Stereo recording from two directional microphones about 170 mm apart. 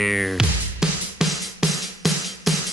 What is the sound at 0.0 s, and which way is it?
Music, centre (ahead or behind).